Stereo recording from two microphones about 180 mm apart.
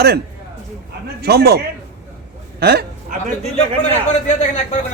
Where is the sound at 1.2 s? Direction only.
65° right (ahead or behind).